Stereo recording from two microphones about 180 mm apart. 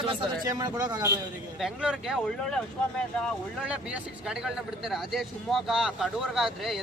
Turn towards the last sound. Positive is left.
turn(degrees=0)  # may be behind; listen again after turning